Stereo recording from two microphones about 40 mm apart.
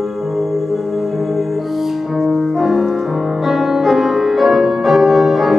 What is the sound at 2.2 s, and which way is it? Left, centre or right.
Music, centre.